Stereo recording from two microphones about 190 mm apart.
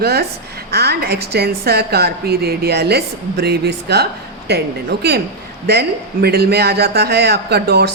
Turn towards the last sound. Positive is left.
turn(degrees=-60)  # may be behind; listen again after turning